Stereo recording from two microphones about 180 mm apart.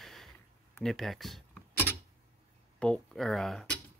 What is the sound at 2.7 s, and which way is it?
Speech, 5° left (ahead or behind).